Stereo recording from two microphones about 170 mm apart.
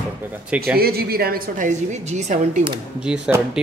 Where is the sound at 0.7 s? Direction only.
65° right (ahead or behind); by 2.6 s 45° right (ahead or behind).